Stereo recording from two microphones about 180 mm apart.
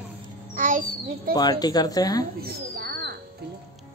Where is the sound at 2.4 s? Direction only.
60° right (ahead or behind).